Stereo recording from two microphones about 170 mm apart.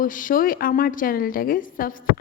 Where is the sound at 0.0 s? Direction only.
50° left (ahead or behind).